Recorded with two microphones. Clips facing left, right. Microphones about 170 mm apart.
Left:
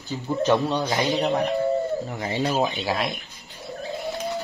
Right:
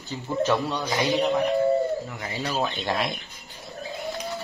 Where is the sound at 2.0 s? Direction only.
30° left (ahead or behind).